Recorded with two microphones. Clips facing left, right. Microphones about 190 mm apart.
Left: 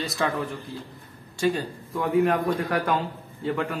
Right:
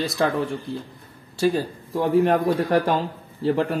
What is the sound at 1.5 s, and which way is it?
A man's voice, 30° right (ahead or behind).